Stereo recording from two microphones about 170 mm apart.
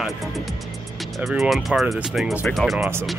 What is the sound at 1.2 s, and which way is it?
Speech, centre (ahead or behind).